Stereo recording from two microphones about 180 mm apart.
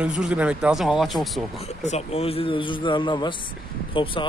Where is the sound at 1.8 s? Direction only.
35° left (ahead or behind).